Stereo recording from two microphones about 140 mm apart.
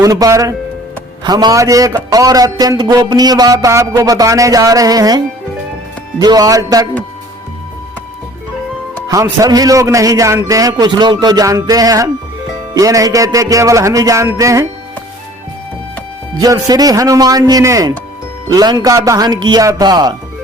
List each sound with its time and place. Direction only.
0.0 s a man's voice: 25° right (ahead or behind)
9.2 s a man's voice: 25° right (ahead or behind)
16.4 s a man's voice: 25° right (ahead or behind)